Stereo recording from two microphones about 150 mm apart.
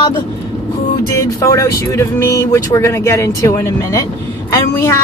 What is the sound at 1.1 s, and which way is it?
Speech, 20° left (ahead or behind).